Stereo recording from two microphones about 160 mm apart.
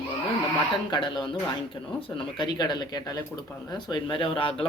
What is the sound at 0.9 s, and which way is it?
Speech, 30° left (ahead or behind).